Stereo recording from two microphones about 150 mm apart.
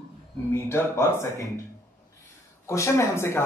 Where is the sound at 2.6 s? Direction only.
20° left (ahead or behind).